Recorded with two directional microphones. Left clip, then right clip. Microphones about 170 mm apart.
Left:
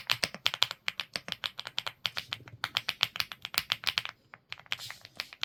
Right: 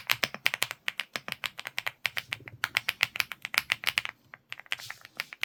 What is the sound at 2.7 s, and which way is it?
Finger snapping, 20° right (ahead or behind).